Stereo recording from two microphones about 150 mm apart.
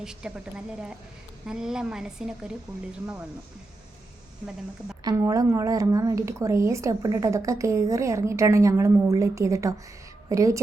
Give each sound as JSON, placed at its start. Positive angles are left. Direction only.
{"t": 0.0, "sound": "speech", "side_deg": -5}
{"t": 5.0, "sound": "a woman's voice", "side_deg": -20}